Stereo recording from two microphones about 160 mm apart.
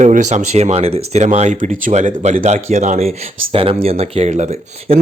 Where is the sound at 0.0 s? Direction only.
50° right (ahead or behind).